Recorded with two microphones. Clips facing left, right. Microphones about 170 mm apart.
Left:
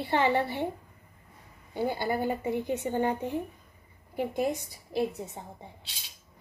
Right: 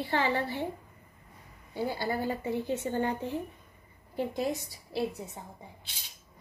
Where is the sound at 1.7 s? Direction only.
20° left (ahead or behind).